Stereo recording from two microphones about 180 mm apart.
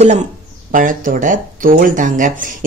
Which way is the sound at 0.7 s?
50° right (ahead or behind).